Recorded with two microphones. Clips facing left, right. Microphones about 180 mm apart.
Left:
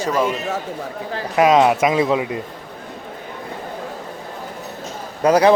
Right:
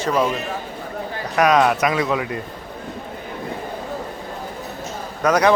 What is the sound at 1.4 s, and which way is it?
Speech, 25° left (ahead or behind).